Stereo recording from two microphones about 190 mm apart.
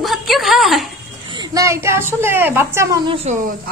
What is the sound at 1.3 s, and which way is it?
A child's voice, 20° right (ahead or behind).